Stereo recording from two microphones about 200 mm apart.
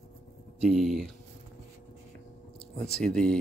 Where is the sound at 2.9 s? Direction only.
5° left (ahead or behind).